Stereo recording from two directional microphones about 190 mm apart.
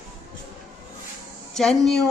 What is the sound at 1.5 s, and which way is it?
Speech, 5° left (ahead or behind).